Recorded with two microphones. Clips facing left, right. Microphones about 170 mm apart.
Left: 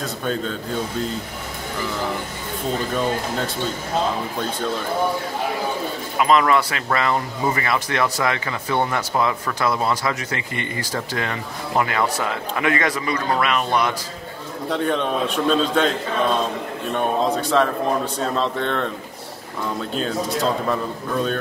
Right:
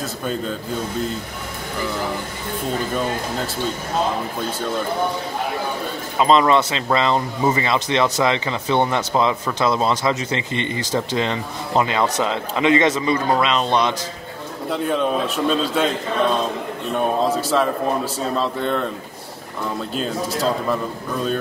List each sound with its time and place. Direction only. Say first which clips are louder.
0.0 s a man's voice: even; 5° right (ahead or behind)
6.1 s speech: right 2 dB; 25° right (ahead or behind)
14.7 s a man's voice: right 1 dB; 5° right (ahead or behind)
16.9 s a man's voice: right 1 dB; 5° right (ahead or behind)
19.9 s a man's voice: even; centre (ahead or behind)